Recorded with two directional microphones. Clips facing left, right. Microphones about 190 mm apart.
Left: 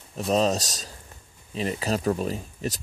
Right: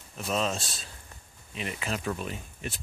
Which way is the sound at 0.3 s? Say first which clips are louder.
Left 7 dB; 40° left (ahead or behind).